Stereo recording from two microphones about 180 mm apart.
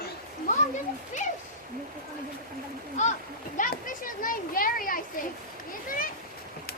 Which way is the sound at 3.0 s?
40° left (ahead or behind).